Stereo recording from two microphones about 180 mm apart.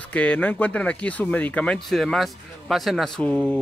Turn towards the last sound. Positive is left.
turn(degrees=5)  # may be behind; listen again after turning